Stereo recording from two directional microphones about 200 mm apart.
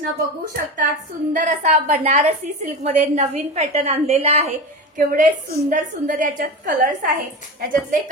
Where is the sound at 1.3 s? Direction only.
40° right (ahead or behind).